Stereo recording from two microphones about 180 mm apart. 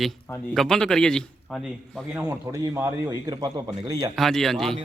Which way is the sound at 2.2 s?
20° right (ahead or behind).